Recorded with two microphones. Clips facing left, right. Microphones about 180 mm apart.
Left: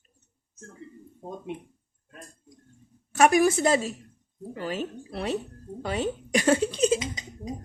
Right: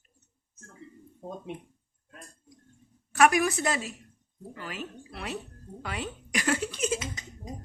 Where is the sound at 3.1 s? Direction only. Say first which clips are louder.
Left 3 dB; 25° left (ahead or behind).